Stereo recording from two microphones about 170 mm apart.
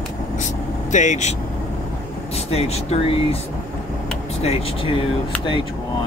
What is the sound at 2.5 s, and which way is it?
Speech, 35° left (ahead or behind).